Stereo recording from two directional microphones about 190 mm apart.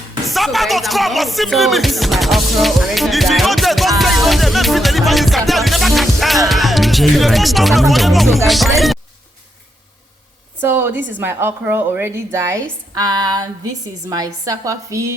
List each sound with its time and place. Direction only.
0.3 s music: centre (ahead or behind)
10.6 s a woman's voice: 10° right (ahead or behind)
12.9 s female singing: 20° right (ahead or behind)
14.1 s a woman's voice: 20° right (ahead or behind)